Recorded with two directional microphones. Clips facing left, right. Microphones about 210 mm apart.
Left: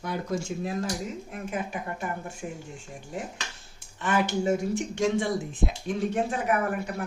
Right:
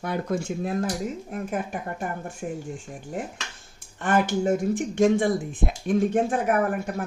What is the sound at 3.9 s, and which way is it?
Speech, 50° right (ahead or behind).